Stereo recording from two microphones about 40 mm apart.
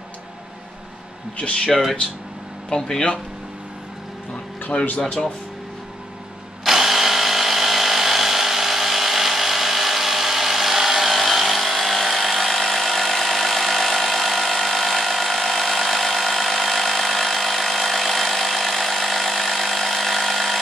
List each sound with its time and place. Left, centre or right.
2.7 s speech: left
4.6 s speech: left
6.6 s tools: centre